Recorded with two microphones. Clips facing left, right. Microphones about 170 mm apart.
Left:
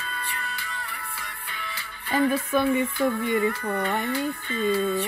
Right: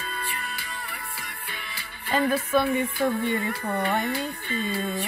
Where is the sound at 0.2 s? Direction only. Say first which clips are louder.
Even; 10° right (ahead or behind).